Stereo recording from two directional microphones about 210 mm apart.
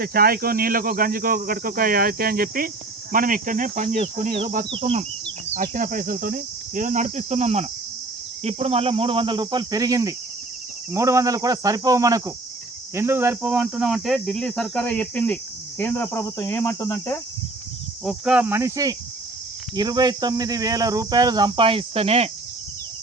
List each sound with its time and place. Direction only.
0.0 s speech: 45° right (ahead or behind); by 17.2 s 15° left (ahead or behind)
18.0 s speech: 5° right (ahead or behind); by 22.3 s 30° right (ahead or behind)